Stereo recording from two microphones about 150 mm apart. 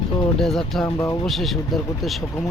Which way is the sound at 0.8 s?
20° left (ahead or behind).